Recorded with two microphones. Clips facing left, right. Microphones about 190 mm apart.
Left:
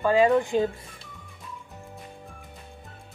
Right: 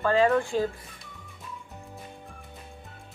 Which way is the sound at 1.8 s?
Centre (ahead or behind).